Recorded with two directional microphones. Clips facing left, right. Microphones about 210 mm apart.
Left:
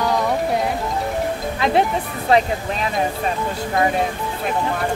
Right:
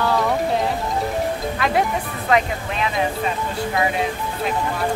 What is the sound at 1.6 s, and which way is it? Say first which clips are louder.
Speech: left 4 dB; 30° left (ahead or behind).